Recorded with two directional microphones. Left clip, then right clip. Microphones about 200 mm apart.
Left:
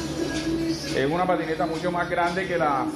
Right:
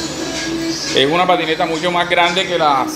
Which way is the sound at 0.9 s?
45° right (ahead or behind).